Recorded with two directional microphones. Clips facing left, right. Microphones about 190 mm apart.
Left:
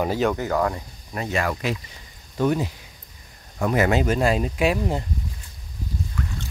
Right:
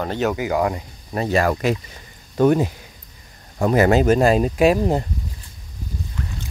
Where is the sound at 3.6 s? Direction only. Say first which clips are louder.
Right 5 dB; 35° right (ahead or behind).